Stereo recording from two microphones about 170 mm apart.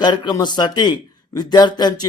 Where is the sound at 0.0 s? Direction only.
25° left (ahead or behind).